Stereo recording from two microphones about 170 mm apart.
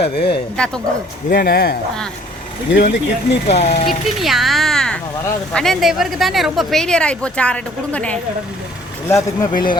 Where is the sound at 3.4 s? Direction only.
40° left (ahead or behind).